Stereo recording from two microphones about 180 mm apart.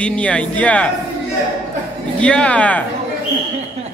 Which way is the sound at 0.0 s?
5° left (ahead or behind).